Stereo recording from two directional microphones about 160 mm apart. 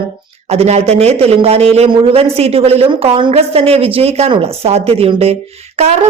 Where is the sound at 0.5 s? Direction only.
40° right (ahead or behind).